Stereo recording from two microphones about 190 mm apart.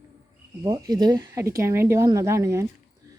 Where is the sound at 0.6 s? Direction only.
20° right (ahead or behind).